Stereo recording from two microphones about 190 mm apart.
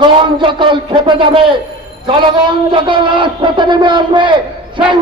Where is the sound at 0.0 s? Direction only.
25° right (ahead or behind).